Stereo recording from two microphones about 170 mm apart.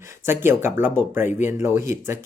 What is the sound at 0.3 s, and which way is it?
Speech, 15° right (ahead or behind).